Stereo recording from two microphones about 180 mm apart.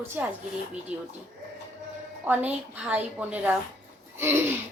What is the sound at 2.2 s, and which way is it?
A woman's voice, 10° right (ahead or behind).